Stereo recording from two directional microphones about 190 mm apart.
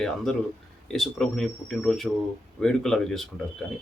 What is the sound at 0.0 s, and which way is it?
Speech, centre (ahead or behind).